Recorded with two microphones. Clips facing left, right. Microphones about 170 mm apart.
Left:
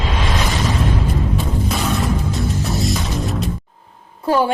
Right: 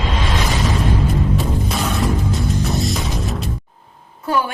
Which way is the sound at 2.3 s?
Centre (ahead or behind).